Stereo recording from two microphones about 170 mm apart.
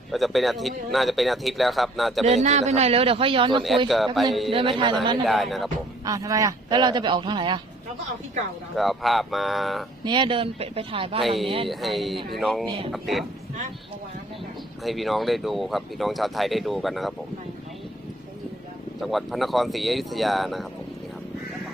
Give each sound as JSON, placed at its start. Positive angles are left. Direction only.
{"t": 0.1, "sound": "speech", "side_deg": 0}
{"t": 2.2, "sound": "a man's voice", "side_deg": -40}
{"t": 3.8, "sound": "speech", "side_deg": 0}
{"t": 4.5, "sound": "speech", "side_deg": -30}
{"t": 5.2, "sound": "speech", "side_deg": 0}
{"t": 6.1, "sound": "speech", "side_deg": -20}
{"t": 8.7, "sound": "speech", "side_deg": 0}
{"t": 10.0, "sound": "a man's voice", "side_deg": -30}
{"t": 11.2, "sound": "speech", "side_deg": 0}
{"t": 11.4, "sound": "a man's voice", "side_deg": -30}
{"t": 11.7, "sound": "speech", "side_deg": 0}
{"t": 14.8, "sound": "speech", "side_deg": 0}
{"t": 19.0, "sound": "speech", "side_deg": 0}